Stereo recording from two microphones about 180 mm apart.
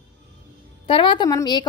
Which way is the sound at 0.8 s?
30° left (ahead or behind).